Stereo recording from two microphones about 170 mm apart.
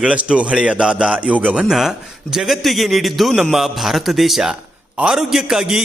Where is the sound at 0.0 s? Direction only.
5° right (ahead or behind).